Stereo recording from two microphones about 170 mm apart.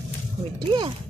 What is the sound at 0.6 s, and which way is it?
Speech, 25° right (ahead or behind).